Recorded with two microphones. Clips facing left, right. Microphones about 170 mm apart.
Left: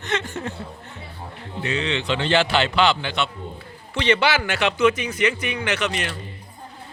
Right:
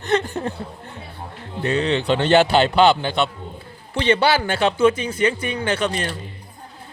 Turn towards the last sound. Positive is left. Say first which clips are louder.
# right 3 dB
turn(degrees=-30)  # may be behind; listen again after turning